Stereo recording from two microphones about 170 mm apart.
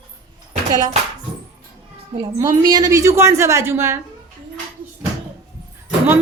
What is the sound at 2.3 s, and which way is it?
Speech, 20° right (ahead or behind).